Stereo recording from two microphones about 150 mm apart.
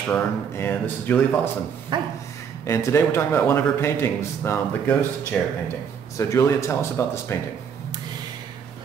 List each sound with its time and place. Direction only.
0.1 s a man's voice: 15° left (ahead or behind)
1.9 s a sound: 30° right (ahead or behind)
2.6 s a man's voice: 20° left (ahead or behind)